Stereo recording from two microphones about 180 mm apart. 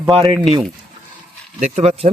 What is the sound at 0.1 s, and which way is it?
Speech, 30° right (ahead or behind).